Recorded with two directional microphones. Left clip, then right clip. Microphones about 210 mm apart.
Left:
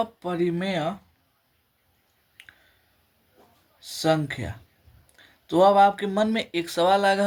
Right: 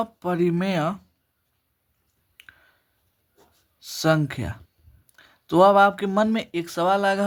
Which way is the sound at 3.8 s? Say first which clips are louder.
Right 1 dB; 30° right (ahead or behind).